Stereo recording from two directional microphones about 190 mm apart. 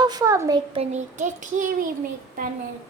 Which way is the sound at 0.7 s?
35° right (ahead or behind).